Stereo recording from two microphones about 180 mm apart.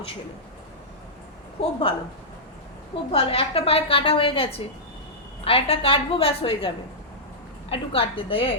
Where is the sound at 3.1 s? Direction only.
30° left (ahead or behind).